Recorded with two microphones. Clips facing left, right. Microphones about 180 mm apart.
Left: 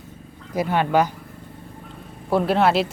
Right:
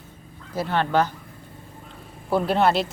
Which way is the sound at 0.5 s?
15° left (ahead or behind).